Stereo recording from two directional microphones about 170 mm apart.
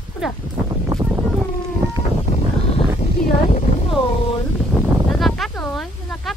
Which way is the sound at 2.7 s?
35° left (ahead or behind).